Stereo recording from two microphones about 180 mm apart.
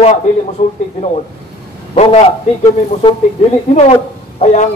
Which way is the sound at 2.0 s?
35° left (ahead or behind).